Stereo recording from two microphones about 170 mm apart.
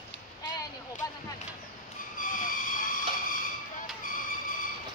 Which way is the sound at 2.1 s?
55° left (ahead or behind).